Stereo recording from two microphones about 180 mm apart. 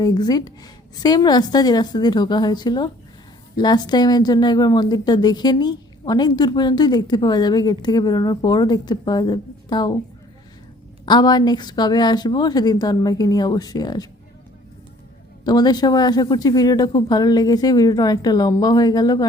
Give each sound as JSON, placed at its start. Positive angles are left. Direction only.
{"t": 0.0, "sound": "a woman's voice", "side_deg": 20}
{"t": 11.0, "sound": "a woman's voice", "side_deg": 25}
{"t": 15.4, "sound": "a woman's voice", "side_deg": 20}